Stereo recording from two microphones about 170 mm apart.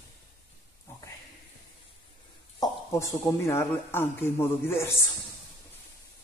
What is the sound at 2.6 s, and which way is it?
Speech, 15° left (ahead or behind).